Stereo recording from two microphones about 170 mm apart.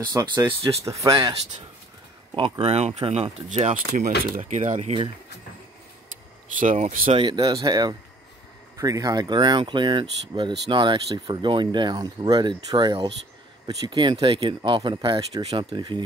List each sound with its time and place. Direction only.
0.1 s speech: 25° right (ahead or behind)
2.3 s speech: 35° right (ahead or behind)
6.5 s speech: 50° right (ahead or behind)
7.2 s speech: 25° right (ahead or behind)